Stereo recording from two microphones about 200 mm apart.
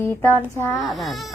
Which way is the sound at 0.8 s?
Centre (ahead or behind).